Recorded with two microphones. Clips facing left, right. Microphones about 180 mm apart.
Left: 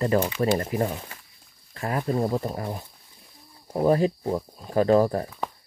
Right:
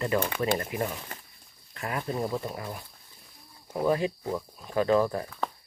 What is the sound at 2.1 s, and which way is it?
Speech, 35° left (ahead or behind).